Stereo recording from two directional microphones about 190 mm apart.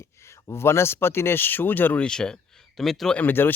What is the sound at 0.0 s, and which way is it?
Speech, 15° left (ahead or behind).